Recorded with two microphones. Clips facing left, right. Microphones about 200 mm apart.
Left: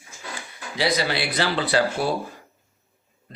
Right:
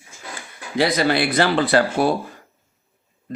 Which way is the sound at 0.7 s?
50° right (ahead or behind).